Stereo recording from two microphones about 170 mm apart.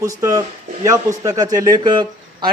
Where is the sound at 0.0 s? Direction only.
20° right (ahead or behind).